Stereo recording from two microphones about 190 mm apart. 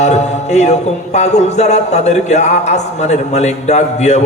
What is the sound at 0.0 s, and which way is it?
Mantra, 35° left (ahead or behind).